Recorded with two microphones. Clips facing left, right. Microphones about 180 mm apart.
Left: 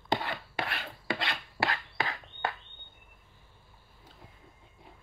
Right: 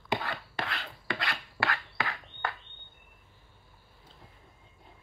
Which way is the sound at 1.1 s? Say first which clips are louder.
Even; 20° left (ahead or behind).